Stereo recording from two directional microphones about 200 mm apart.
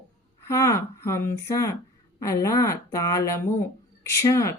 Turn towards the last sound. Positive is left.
turn(degrees=15)  # may be behind; listen again after turning